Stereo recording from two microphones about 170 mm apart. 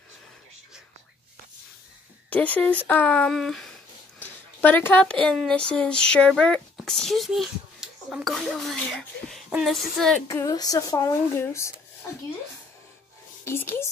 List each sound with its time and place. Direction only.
2.2 s speech: 10° left (ahead or behind)
2.9 s a sound: 10° left (ahead or behind)
4.2 s speech: 10° left (ahead or behind)
9.5 s a sound: centre (ahead or behind)
10.2 s speech: 20° left (ahead or behind)
13.4 s speech: 15° left (ahead or behind)